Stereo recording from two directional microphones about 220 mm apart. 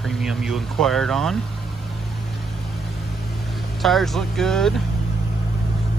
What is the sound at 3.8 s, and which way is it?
Speech, centre (ahead or behind).